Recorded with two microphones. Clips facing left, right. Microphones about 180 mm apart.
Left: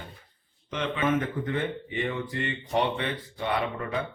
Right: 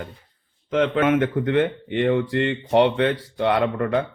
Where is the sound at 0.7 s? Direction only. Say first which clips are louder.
Right 8 dB; 80° right.